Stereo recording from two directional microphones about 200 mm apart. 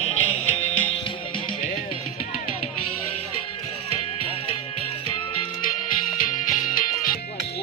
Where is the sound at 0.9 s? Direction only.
25° left (ahead or behind).